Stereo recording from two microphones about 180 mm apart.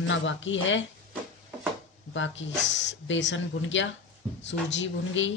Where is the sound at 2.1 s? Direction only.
90° left.